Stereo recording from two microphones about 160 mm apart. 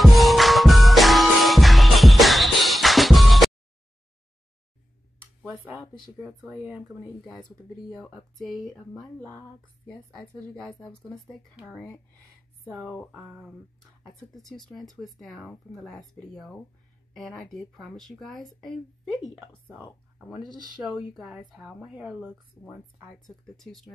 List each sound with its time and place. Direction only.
0.0 s music: centre (ahead or behind)
5.2 s speech: centre (ahead or behind)
7.9 s speech: centre (ahead or behind)
12.6 s speech: 10° right (ahead or behind)
14.3 s speech: centre (ahead or behind)
20.9 s speech: 5° right (ahead or behind)
22.6 s speech: 20° left (ahead or behind)
23.2 s speech: centre (ahead or behind)